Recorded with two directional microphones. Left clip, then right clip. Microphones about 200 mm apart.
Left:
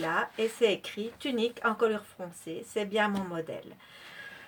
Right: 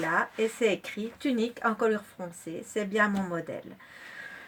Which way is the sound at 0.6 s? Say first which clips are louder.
Even; 25° right (ahead or behind).